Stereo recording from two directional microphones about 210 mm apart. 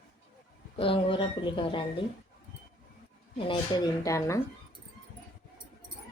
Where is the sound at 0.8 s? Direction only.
25° left (ahead or behind).